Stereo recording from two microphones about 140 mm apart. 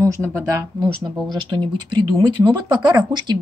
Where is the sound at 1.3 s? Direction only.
35° right (ahead or behind).